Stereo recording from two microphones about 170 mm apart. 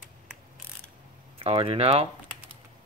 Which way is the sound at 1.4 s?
35° right (ahead or behind).